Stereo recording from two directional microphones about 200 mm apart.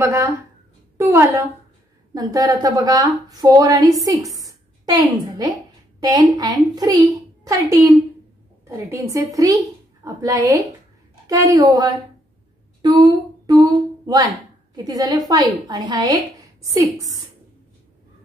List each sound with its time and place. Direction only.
0.0 s a woman's voice: 15° right (ahead or behind)
4.4 s a sound: 20° right (ahead or behind)
5.9 s a woman's voice: 20° right (ahead or behind)